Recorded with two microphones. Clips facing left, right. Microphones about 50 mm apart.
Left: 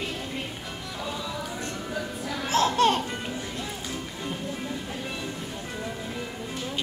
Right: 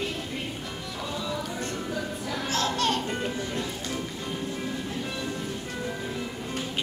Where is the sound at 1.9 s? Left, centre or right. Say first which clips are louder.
Even; centre.